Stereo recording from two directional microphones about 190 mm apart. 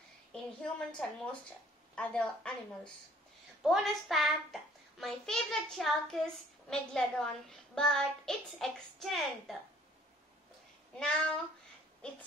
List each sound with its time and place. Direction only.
0.3 s a woman's voice: 5° left (ahead or behind)
11.0 s a child's voice: 5° left (ahead or behind)
12.0 s a sound: 5° left (ahead or behind)